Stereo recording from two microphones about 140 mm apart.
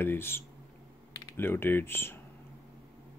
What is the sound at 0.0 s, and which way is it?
Speech, 15° left (ahead or behind).